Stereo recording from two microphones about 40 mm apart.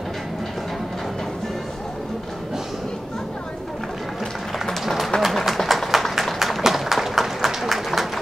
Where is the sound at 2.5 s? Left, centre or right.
Centre.